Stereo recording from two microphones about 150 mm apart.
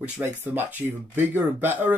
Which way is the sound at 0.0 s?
15° right (ahead or behind).